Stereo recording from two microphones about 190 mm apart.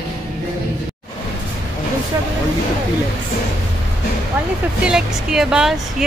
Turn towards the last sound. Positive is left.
turn(degrees=-5)  # may be behind; listen again after turning